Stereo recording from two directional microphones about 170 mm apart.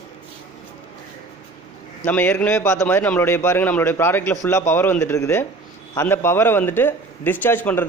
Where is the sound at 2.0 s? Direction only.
10° left (ahead or behind).